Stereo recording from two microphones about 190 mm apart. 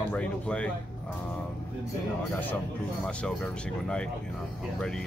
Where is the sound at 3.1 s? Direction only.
5° left (ahead or behind).